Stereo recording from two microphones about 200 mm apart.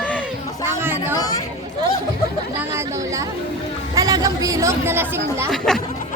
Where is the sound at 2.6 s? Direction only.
15° right (ahead or behind).